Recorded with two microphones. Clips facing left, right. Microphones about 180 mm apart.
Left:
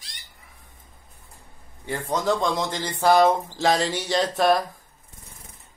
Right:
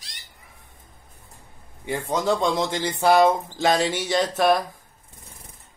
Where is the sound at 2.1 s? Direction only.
10° right (ahead or behind).